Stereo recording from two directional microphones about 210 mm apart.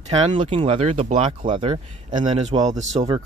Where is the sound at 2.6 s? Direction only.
35° right (ahead or behind).